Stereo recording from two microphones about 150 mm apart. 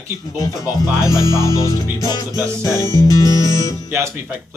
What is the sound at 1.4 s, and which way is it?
Speech, 20° left (ahead or behind).